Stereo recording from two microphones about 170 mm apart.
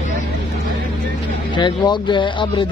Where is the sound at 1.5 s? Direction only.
25° left (ahead or behind).